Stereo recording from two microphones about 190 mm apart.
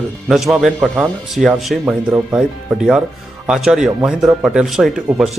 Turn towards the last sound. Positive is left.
turn(degrees=0)  # may be behind; listen again after turning